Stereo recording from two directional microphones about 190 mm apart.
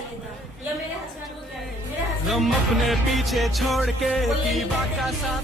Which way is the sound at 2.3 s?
Centre (ahead or behind).